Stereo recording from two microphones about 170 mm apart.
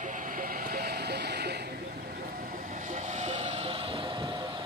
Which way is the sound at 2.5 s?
50° right (ahead or behind).